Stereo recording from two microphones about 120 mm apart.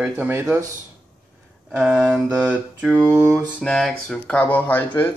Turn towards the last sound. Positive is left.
turn(degrees=15)  # may be behind; listen again after turning